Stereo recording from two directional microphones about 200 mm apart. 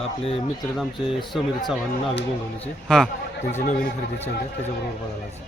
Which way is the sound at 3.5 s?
40° left (ahead or behind).